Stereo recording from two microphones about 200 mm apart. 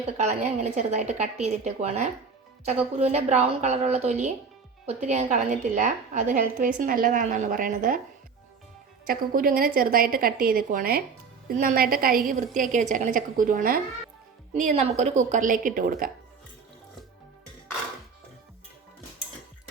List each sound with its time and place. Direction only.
0.2 s a woman's voice: 35° right (ahead or behind)
9.0 s a woman's voice: 45° right (ahead or behind)